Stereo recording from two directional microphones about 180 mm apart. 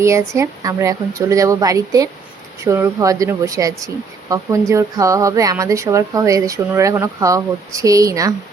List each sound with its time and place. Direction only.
0.0 s speech: 15° right (ahead or behind)